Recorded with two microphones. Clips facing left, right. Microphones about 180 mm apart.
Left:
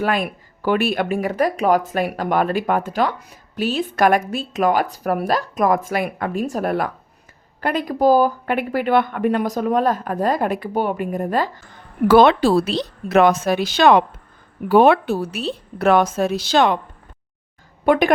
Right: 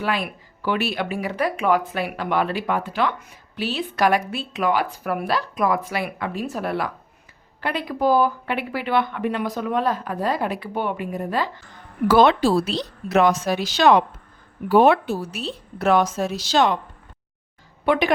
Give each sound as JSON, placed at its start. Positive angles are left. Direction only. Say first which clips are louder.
{"t": 0.0, "sound": "speech", "louder": "left 4 dB", "side_deg": 45}
{"t": 12.0, "sound": "a woman's voice", "louder": "left 3 dB", "side_deg": 60}
{"t": 17.8, "sound": "speech", "louder": "left 4 dB", "side_deg": 45}